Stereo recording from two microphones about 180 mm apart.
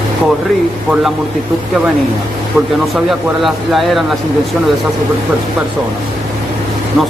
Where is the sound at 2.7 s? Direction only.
Centre (ahead or behind).